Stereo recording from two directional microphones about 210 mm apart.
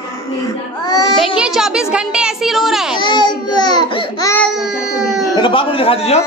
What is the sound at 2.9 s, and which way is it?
Baby cry, 20° left (ahead or behind).